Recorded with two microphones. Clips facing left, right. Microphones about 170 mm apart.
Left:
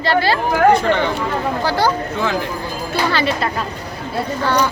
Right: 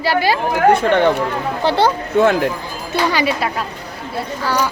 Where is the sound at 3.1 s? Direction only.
10° right (ahead or behind).